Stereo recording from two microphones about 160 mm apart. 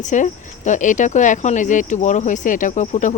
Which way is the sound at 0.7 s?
50° left (ahead or behind).